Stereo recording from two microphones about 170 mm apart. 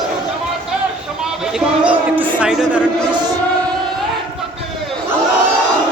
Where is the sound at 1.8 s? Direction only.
10° right (ahead or behind).